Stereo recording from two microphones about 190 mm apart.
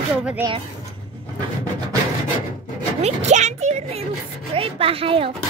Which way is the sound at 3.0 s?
35° right (ahead or behind).